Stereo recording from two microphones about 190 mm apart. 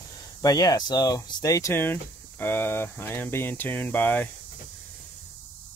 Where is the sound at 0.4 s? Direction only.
20° left (ahead or behind).